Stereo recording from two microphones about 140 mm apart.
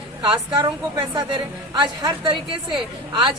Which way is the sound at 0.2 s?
35° right (ahead or behind).